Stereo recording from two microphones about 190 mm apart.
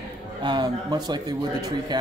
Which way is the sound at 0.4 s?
25° right (ahead or behind).